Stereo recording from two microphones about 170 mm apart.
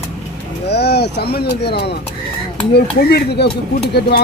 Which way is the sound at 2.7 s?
70° left (ahead or behind).